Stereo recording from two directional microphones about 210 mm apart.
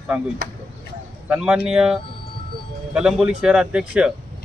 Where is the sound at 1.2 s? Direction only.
5° right (ahead or behind).